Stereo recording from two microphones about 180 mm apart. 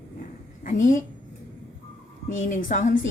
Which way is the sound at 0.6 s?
45° left (ahead or behind).